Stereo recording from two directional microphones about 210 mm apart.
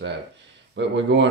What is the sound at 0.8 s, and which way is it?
Speech, 60° right (ahead or behind).